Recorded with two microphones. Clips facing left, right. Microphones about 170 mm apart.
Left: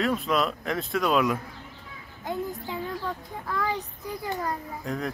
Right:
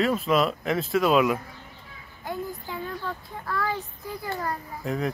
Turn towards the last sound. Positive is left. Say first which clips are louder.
# right 3 dB
turn(degrees=-5)  # may be behind; listen again after turning